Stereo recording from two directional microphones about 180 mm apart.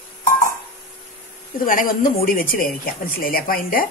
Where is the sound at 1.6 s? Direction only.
50° left (ahead or behind).